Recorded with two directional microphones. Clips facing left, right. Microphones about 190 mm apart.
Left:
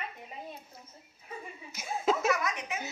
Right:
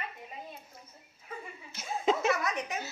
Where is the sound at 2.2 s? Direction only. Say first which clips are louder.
Even; 35° right (ahead or behind).